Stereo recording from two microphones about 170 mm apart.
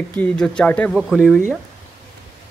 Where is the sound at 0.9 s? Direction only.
Centre (ahead or behind).